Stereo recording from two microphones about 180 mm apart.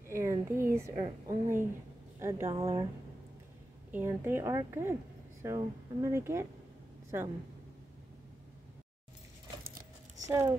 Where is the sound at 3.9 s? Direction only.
10° right (ahead or behind).